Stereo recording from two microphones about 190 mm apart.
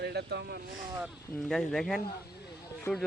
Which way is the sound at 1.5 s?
Centre (ahead or behind).